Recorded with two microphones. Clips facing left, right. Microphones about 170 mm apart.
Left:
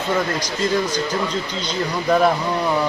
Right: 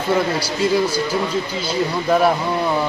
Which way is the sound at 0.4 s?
10° right (ahead or behind).